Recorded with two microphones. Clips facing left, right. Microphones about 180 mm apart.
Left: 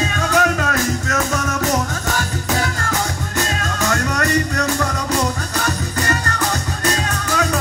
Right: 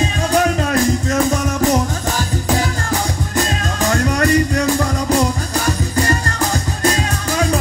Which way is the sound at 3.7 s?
30° right (ahead or behind).